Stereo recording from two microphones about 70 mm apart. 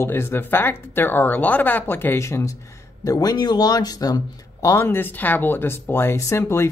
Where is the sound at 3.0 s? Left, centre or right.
Left.